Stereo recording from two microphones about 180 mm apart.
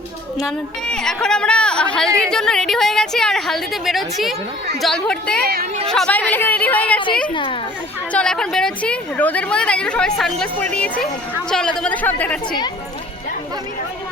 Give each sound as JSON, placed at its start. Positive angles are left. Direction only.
{"t": 0.3, "sound": "a woman's voice", "side_deg": 0}
{"t": 5.4, "sound": "speech", "side_deg": -60}
{"t": 5.9, "sound": "speech", "side_deg": 5}
{"t": 8.1, "sound": "a woman's voice", "side_deg": 5}